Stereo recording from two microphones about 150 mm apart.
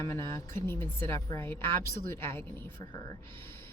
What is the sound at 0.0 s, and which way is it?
Speech, 20° left (ahead or behind).